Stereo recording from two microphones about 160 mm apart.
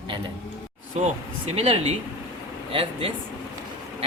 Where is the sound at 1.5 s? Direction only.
35° right (ahead or behind).